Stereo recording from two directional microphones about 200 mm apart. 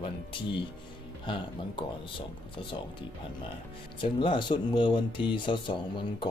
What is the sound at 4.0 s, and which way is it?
Speech, 25° left (ahead or behind).